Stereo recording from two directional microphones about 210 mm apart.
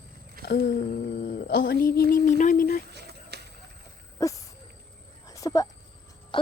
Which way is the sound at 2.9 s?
50° right (ahead or behind).